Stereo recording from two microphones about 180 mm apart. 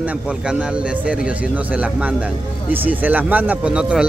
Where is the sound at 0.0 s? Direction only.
5° right (ahead or behind).